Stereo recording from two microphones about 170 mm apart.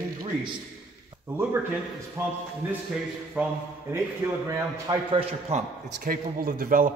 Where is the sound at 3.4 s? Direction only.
10° right (ahead or behind).